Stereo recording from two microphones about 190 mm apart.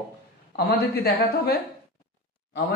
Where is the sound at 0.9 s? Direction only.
55° left (ahead or behind).